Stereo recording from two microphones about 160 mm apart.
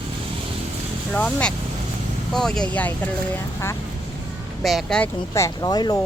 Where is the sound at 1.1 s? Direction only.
5° left (ahead or behind).